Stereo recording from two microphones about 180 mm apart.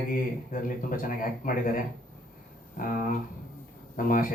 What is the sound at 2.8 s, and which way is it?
Speech, 50° left (ahead or behind).